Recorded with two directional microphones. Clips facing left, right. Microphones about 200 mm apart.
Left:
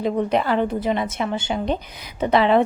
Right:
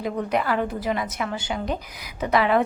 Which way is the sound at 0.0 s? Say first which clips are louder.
Left 4 dB; 25° left (ahead or behind).